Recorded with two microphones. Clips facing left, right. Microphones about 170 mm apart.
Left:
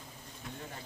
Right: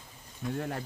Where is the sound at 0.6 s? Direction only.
60° right (ahead or behind).